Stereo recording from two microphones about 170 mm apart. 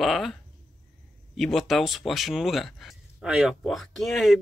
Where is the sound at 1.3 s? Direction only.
Centre (ahead or behind).